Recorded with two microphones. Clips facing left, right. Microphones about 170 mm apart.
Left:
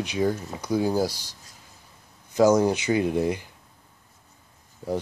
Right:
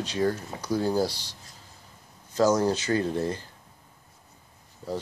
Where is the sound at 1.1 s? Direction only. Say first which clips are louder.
Left 1 dB; 45° left (ahead or behind).